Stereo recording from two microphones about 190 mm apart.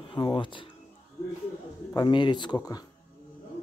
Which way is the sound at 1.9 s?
25° left (ahead or behind).